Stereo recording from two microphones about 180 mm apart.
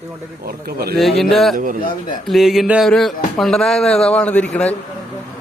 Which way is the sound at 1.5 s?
50° right (ahead or behind).